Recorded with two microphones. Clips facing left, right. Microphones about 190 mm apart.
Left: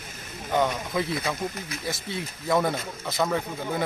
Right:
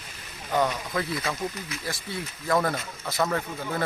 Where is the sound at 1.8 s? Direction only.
20° left (ahead or behind).